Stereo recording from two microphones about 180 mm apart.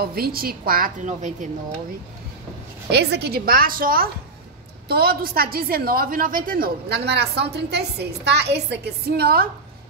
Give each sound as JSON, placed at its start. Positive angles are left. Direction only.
{"t": 0.0, "sound": "a woman's voice", "side_deg": -60}
{"t": 2.9, "sound": "a woman's voice", "side_deg": -70}